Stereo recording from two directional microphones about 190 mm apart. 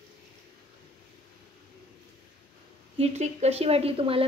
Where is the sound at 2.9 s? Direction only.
35° right (ahead or behind).